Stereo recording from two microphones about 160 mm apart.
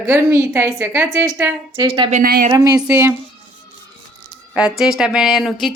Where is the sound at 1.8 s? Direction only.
25° right (ahead or behind).